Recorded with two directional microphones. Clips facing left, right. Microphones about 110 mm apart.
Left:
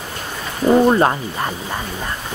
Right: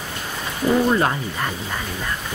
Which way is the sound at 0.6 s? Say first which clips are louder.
Left 5 dB; 30° left (ahead or behind).